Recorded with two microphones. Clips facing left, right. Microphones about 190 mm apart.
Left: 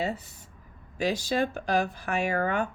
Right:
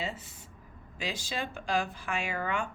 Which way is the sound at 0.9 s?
40° left (ahead or behind).